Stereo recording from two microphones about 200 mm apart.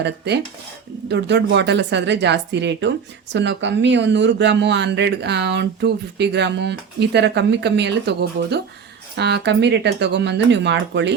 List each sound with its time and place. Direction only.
1.0 s speech: 60° right (ahead or behind)